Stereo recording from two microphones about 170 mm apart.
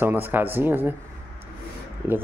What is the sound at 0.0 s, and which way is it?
Speech, 10° right (ahead or behind).